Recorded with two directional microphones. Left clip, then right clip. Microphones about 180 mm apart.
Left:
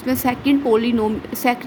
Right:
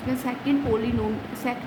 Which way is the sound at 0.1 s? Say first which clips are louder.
Left 8 dB; 50° left (ahead or behind).